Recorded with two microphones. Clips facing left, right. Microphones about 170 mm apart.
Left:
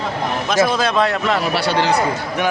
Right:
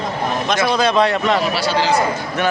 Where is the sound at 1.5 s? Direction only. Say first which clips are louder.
Even; 60° left (ahead or behind).